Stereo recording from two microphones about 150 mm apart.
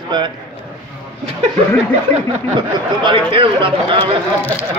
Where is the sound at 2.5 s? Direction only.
35° right (ahead or behind).